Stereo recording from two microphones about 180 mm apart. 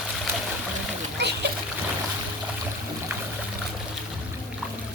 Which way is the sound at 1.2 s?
70° right (ahead or behind).